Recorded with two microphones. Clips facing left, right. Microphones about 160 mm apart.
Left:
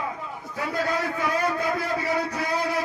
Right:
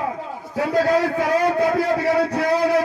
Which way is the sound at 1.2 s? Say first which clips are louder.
Right 7 dB; 75° right (ahead or behind).